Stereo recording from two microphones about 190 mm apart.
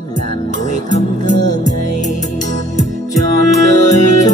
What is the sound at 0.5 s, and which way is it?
Music, 40° left (ahead or behind).